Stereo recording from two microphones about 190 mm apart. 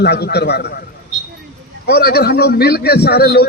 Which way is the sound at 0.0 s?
60° left (ahead or behind).